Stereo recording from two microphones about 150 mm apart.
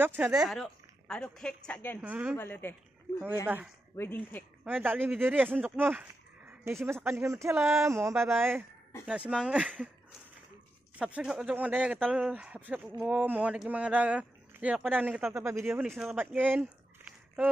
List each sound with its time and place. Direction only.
0.0 s speech: 15° right (ahead or behind)
0.4 s a woman's voice: centre (ahead or behind)
2.0 s speech: 10° right (ahead or behind)
2.3 s speech: 15° left (ahead or behind)
3.4 s speech: 10° right (ahead or behind)
3.9 s speech: 15° left (ahead or behind)
4.6 s speech: 15° right (ahead or behind)
11.0 s speech: 10° right (ahead or behind)
15.9 s speech: centre (ahead or behind)
16.2 s a sound: 10° right (ahead or behind)